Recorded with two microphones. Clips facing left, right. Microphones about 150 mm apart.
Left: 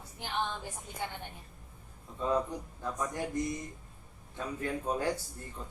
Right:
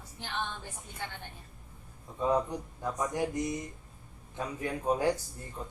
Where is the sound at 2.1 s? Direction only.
15° right (ahead or behind).